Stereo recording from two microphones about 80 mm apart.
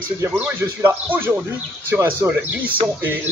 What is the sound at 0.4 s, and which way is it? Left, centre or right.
Speech, right.